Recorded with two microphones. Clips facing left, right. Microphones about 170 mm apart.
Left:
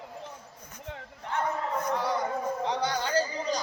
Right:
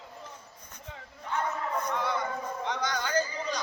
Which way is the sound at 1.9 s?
35° left (ahead or behind).